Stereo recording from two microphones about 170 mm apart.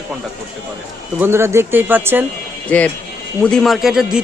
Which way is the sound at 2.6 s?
10° left (ahead or behind).